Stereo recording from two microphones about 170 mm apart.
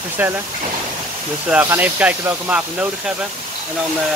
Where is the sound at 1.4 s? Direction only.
10° right (ahead or behind).